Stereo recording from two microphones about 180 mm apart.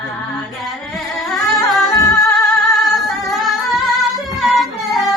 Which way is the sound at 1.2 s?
Centre (ahead or behind).